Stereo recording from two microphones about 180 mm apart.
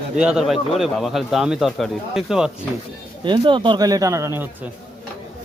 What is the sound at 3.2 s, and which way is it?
Speech, 25° right (ahead or behind).